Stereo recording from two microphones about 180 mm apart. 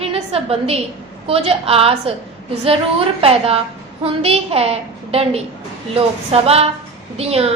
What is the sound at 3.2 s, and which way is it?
A woman's voice, 35° right (ahead or behind).